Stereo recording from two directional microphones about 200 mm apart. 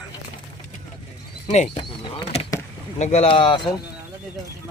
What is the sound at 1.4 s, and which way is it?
Speech, 35° left (ahead or behind).